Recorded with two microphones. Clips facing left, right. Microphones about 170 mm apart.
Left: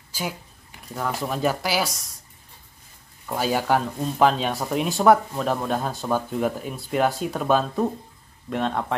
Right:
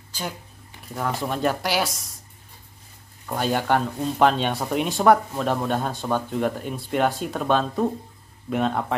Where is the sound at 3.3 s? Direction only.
5° left (ahead or behind).